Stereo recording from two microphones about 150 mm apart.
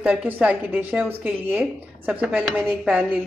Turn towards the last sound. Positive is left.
turn(degrees=-5)  # may be behind; listen again after turning